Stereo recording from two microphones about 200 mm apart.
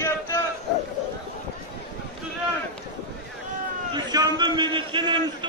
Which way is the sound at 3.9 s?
20° right (ahead or behind).